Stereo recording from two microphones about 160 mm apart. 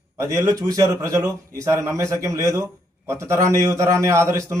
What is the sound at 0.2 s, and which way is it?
A man's voice, 20° right (ahead or behind).